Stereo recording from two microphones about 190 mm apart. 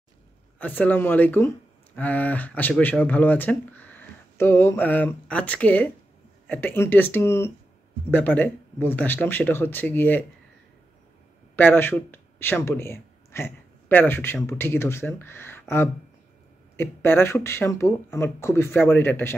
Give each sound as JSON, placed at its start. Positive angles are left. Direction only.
{"t": 0.6, "sound": "speech", "side_deg": 10}
{"t": 11.5, "sound": "speech", "side_deg": 10}